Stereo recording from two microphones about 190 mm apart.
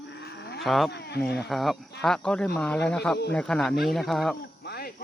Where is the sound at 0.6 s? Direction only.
Centre (ahead or behind).